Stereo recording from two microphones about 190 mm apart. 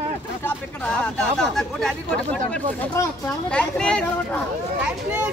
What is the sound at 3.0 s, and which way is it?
Speech, 5° left (ahead or behind).